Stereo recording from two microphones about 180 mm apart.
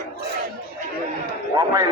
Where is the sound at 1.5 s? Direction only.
15° right (ahead or behind).